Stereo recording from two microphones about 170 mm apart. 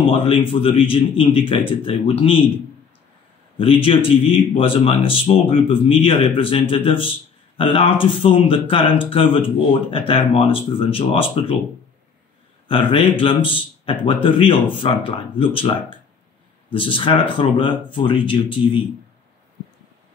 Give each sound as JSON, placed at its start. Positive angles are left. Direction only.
{"t": 0.0, "sound": "speech", "side_deg": 30}
{"t": 3.5, "sound": "speech", "side_deg": 30}
{"t": 12.6, "sound": "a man's voice", "side_deg": 30}